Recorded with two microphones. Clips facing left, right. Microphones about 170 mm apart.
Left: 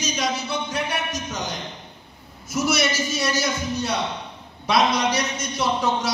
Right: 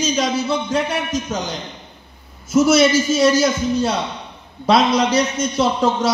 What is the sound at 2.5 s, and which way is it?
Speech, 25° right (ahead or behind).